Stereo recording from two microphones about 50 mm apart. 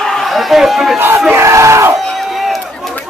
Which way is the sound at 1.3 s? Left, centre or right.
Right.